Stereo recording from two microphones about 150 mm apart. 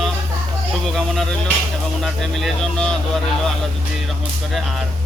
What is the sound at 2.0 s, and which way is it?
Speech, centre (ahead or behind).